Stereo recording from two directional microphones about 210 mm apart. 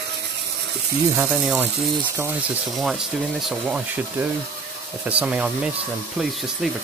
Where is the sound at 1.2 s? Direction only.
5° right (ahead or behind).